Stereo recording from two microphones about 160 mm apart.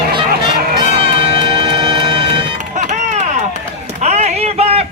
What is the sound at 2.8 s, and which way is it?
Music, 45° right (ahead or behind).